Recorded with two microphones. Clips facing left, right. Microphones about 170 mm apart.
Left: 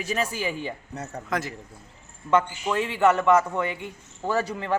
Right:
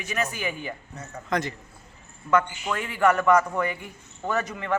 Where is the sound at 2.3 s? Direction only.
25° left (ahead or behind).